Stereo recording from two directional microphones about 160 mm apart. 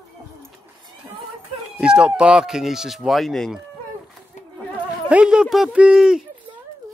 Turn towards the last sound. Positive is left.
turn(degrees=-5)  # may be behind; listen again after turning